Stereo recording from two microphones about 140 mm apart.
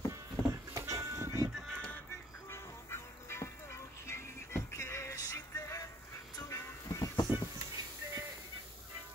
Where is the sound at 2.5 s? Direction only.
20° left (ahead or behind).